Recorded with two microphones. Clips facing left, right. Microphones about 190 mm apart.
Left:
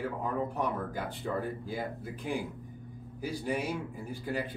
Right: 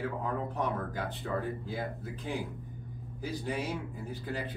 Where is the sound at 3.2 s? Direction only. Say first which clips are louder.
Left 2 dB; 10° left (ahead or behind).